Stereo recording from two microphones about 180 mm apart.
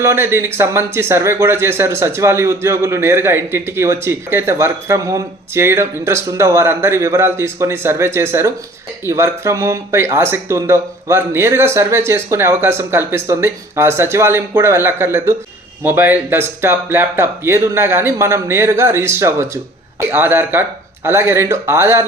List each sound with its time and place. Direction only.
0.0 s speech: 15° right (ahead or behind)